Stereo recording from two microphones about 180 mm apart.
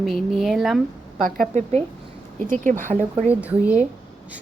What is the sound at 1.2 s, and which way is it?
A woman's voice, 50° right (ahead or behind).